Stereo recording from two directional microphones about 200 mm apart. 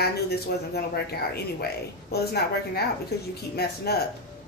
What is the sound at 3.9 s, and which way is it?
Speech, 55° left (ahead or behind).